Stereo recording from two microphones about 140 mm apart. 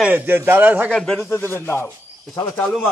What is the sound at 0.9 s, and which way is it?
Speech, 5° left (ahead or behind).